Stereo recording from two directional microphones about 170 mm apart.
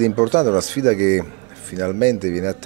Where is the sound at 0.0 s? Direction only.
20° right (ahead or behind).